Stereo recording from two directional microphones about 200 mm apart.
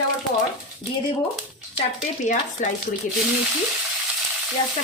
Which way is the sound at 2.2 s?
35° left (ahead or behind).